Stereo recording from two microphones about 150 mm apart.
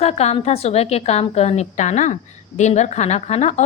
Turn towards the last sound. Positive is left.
turn(degrees=50)  # may be behind; listen again after turning